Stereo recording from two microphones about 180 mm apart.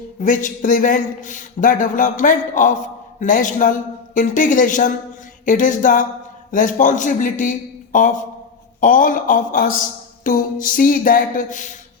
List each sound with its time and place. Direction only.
0.2 s a man's voice: 45° left (ahead or behind)